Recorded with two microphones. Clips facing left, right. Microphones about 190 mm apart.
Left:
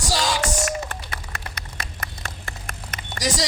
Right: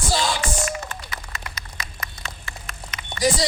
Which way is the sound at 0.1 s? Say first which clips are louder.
Even; 40° left (ahead or behind).